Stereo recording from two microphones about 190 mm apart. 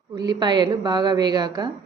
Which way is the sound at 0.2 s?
20° right (ahead or behind).